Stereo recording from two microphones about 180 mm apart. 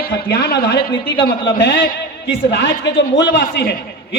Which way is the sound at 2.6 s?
80° left.